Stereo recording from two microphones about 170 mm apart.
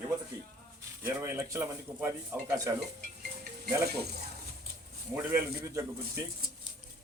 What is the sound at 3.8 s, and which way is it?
Speech, 70° right (ahead or behind).